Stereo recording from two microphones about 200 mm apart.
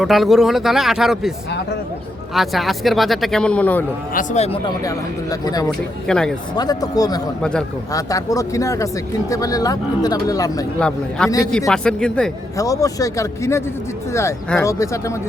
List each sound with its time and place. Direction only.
0.0 s speech: centre (ahead or behind)
2.3 s speech: centre (ahead or behind)
4.1 s speech: 40° left (ahead or behind)
4.6 s speech: 15° left (ahead or behind)
6.1 s speech: 5° left (ahead or behind)
6.6 s speech: 20° left (ahead or behind)
10.8 s speech: 5° left (ahead or behind)
12.5 s speech: 15° left (ahead or behind)